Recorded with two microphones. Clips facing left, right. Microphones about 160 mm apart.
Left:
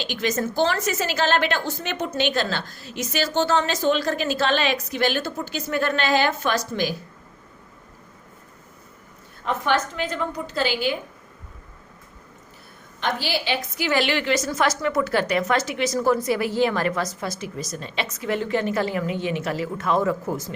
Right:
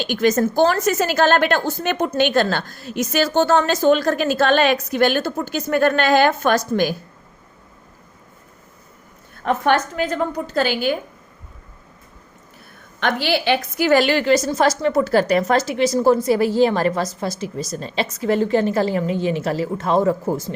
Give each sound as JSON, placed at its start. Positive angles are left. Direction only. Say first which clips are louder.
{"t": 0.0, "sound": "a woman's voice", "louder": "right 7 dB", "side_deg": -50}
{"t": 9.4, "sound": "a woman's voice", "louder": "right 5 dB", "side_deg": -50}
{"t": 13.0, "sound": "a woman's voice", "louder": "right 5 dB", "side_deg": -65}